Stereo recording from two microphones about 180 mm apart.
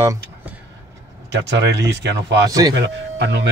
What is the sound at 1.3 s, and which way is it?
A man's voice, 75° right (ahead or behind).